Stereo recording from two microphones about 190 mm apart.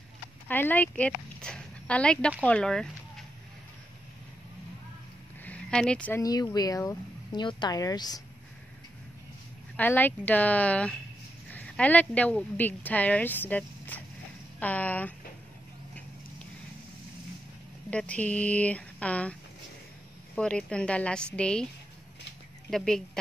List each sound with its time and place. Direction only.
0.5 s a woman's voice: 10° left (ahead or behind)
5.4 s a sound: 5° left (ahead or behind)
6.2 s speech: 20° left (ahead or behind)
9.8 s speech: 10° left (ahead or behind)
17.8 s speech: 5° left (ahead or behind)
20.3 s a woman's voice: 5° left (ahead or behind)
22.7 s a woman's voice: centre (ahead or behind)